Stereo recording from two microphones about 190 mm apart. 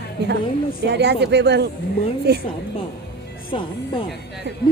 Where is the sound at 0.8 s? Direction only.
65° right (ahead or behind).